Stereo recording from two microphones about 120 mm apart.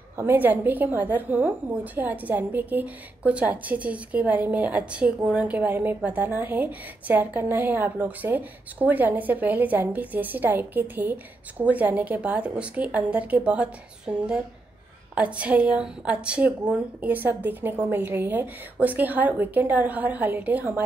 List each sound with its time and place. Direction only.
0.2 s a woman's voice: 15° right (ahead or behind)